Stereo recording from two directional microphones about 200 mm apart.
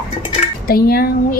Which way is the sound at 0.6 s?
50° left (ahead or behind).